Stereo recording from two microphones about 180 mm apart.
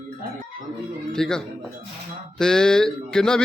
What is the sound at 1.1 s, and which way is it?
Speech, 5° left (ahead or behind).